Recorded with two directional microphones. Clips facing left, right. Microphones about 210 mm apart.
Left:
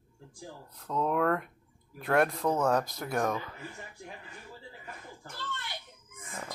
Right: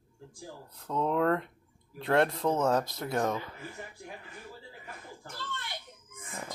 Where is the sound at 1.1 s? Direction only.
25° right (ahead or behind).